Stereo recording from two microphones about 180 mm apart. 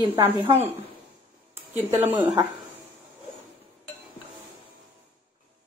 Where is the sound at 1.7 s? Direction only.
10° right (ahead or behind).